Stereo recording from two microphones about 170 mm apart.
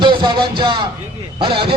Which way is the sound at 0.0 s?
25° right (ahead or behind).